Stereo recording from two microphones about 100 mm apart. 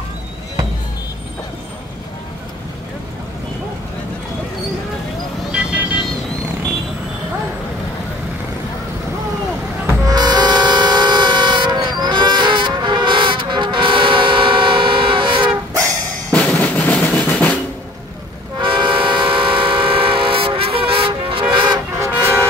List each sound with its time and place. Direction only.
5.5 s vehicle: 10° right (ahead or behind)
10.0 s vehicle: 45° right (ahead or behind)
16.3 s drum kit: 15° left (ahead or behind)
17.1 s drum: 15° left (ahead or behind)
18.6 s train: 55° right (ahead or behind)
21.9 s train: 25° right (ahead or behind)